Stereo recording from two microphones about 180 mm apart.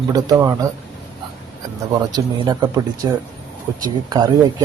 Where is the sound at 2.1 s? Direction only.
25° right (ahead or behind).